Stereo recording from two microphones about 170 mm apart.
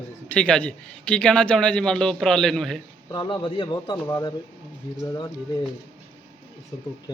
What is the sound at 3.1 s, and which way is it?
Speech, 25° left (ahead or behind).